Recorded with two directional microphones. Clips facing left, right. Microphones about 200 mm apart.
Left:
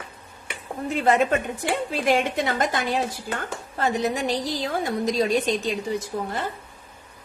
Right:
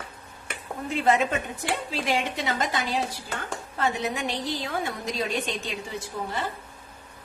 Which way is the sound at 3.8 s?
35° left (ahead or behind).